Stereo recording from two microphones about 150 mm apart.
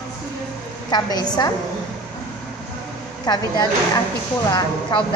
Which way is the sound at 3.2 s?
30° left (ahead or behind).